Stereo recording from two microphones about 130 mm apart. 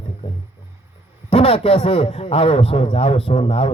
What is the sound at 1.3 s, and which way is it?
A man's voice, 50° left (ahead or behind).